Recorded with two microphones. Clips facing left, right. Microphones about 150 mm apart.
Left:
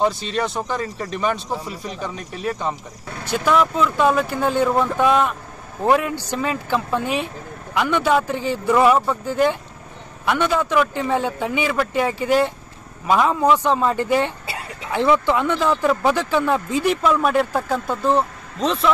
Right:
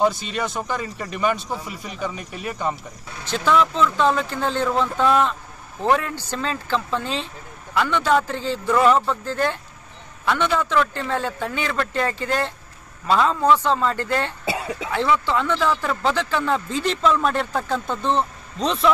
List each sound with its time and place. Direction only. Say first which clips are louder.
0.0 s speech: left 1 dB; 5° right (ahead or behind)
3.3 s speech: left 1 dB; 10° left (ahead or behind)